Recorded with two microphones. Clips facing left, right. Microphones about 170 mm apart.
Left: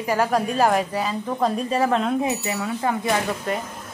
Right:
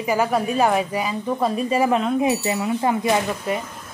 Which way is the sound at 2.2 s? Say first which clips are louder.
Right 4 dB; 15° right (ahead or behind).